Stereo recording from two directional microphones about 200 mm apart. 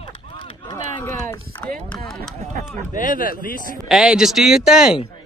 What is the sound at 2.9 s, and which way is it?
Speech, 40° left (ahead or behind).